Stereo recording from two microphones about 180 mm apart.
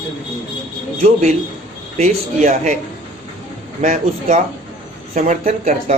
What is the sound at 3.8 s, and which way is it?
Speech, 40° right (ahead or behind).